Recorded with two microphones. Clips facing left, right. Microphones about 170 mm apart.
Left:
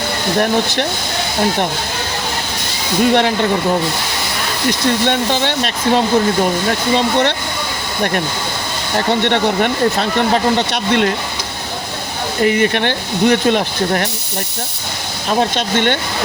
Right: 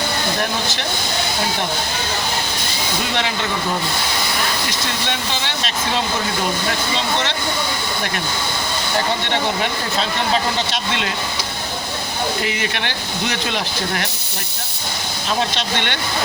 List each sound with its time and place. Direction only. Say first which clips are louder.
0.3 s speech: left 8 dB; 55° left (ahead or behind)
3.0 s speech: left 12 dB; 50° left (ahead or behind)
5.0 s speech: left 9 dB; 50° left (ahead or behind)
9.2 s speech: left 6 dB; 55° left (ahead or behind)
12.4 s speech: left 9 dB; 45° left (ahead or behind)
15.3 s speech: left 6 dB; 50° left (ahead or behind)